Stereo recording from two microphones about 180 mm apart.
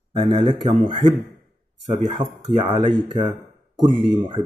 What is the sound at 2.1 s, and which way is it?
Speech, 25° right (ahead or behind).